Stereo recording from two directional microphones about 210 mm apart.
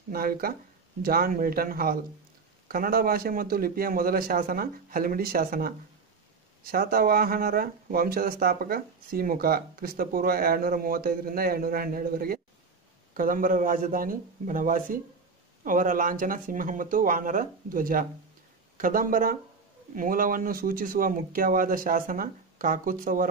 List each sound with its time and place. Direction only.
0.1 s speech: 45° right (ahead or behind)